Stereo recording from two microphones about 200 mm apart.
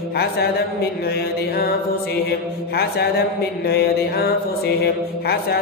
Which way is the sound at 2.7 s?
50° left (ahead or behind).